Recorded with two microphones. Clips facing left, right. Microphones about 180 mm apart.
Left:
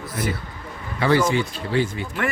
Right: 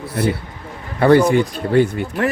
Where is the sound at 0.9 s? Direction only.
60° right (ahead or behind).